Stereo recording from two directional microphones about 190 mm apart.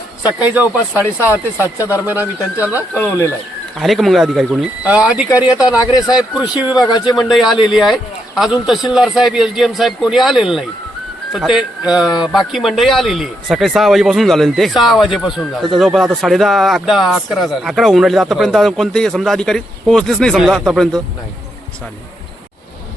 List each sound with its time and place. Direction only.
0.2 s speech: 10° right (ahead or behind)
2.9 s speech: 10° left (ahead or behind)
3.8 s speech: centre (ahead or behind)
5.8 s speech: 20° left (ahead or behind)
6.1 s speech: 5° right (ahead or behind)
6.9 s speech: 20° left (ahead or behind)
7.2 s speech: centre (ahead or behind)